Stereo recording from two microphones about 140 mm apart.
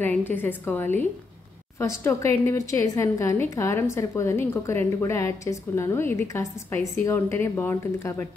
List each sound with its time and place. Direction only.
0.0 s a woman's voice: 15° left (ahead or behind)